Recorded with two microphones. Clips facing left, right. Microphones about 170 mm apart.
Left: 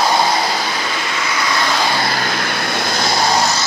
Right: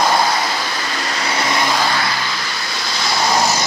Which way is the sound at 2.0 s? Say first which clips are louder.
Left 3 dB; 50° left (ahead or behind).